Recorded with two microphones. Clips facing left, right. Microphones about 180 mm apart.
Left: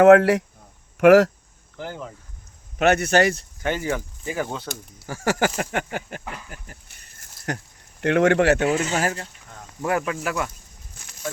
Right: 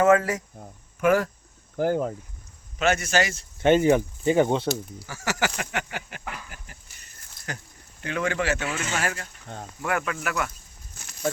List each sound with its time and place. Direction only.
0.0 s speech: 70° left (ahead or behind)
1.7 s speech: 45° right (ahead or behind)
2.7 s speech: 60° left (ahead or behind)
3.6 s speech: 25° right (ahead or behind)
4.7 s speech: 50° left (ahead or behind)
7.5 s speech: 65° left (ahead or behind)
8.6 s speech: 40° left (ahead or behind)